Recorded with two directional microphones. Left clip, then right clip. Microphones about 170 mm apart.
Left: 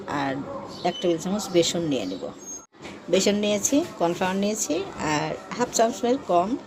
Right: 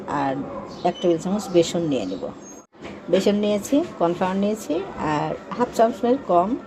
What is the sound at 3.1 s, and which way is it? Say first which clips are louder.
Speech: right 2 dB; centre (ahead or behind).